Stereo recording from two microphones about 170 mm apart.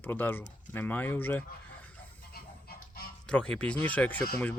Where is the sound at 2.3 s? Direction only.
65° left (ahead or behind).